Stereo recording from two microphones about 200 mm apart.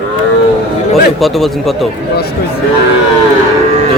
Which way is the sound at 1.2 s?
Centre (ahead or behind).